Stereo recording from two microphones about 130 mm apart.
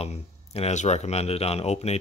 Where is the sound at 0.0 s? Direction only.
50° left (ahead or behind).